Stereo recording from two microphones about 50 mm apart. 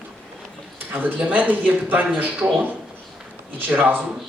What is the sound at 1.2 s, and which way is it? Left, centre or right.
Speech, right.